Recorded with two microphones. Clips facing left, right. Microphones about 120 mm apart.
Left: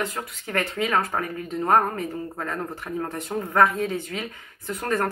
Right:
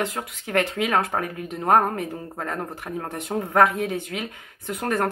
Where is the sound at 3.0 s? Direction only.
20° right (ahead or behind).